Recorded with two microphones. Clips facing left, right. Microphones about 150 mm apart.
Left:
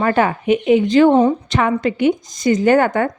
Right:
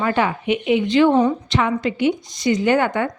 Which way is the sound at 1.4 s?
50° left (ahead or behind).